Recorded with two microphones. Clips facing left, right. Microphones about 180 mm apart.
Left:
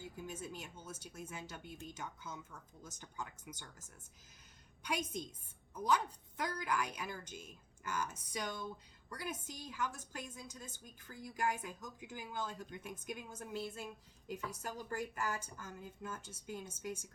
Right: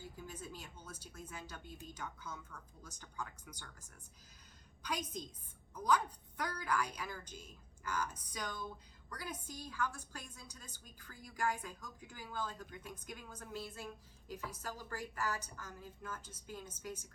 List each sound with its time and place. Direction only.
0.0 s a woman's voice: 25° left (ahead or behind)